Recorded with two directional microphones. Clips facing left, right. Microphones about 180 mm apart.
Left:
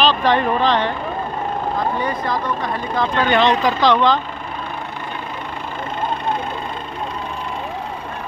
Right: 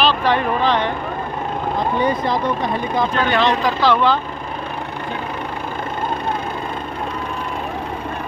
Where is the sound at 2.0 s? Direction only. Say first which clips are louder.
Right 3 dB; 25° right (ahead or behind).